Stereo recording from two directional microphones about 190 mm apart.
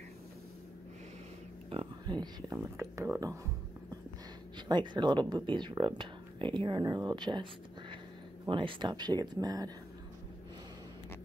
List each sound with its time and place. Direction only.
1.7 s speech: 25° right (ahead or behind)
4.6 s speech: 25° right (ahead or behind)
8.5 s speech: 25° right (ahead or behind)